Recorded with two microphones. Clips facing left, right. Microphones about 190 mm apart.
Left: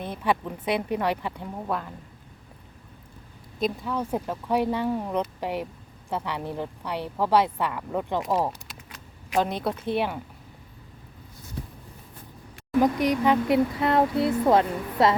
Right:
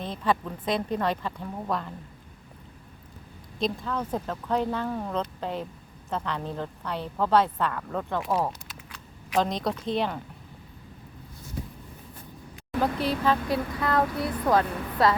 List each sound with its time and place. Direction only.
0.0 s a woman's voice: 10° left (ahead or behind)
3.6 s a woman's voice: 10° left (ahead or behind)
8.3 s a woman's voice: 5° left (ahead or behind)
12.8 s speech: 15° left (ahead or behind)